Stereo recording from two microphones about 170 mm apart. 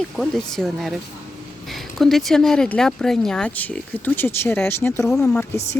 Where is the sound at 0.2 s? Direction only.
Centre (ahead or behind).